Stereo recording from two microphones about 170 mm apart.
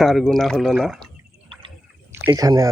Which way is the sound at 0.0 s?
Centre (ahead or behind).